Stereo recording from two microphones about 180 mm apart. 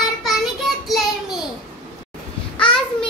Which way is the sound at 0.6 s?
Centre (ahead or behind).